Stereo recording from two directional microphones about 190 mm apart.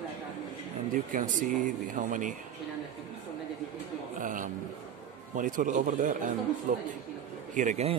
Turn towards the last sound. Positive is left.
turn(degrees=-35)  # may be behind; listen again after turning